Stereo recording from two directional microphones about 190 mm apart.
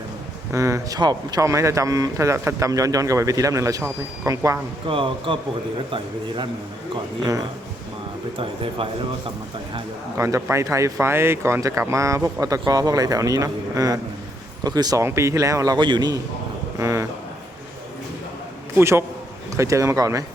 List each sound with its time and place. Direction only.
0.5 s speech: 15° right (ahead or behind)
4.9 s a man's voice: 25° right (ahead or behind)
8.4 s a man's voice: 30° right (ahead or behind)
10.2 s a man's voice: 15° right (ahead or behind)
18.8 s speech: 15° right (ahead or behind)